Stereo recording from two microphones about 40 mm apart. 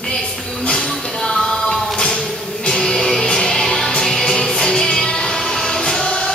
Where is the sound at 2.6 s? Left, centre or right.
Centre.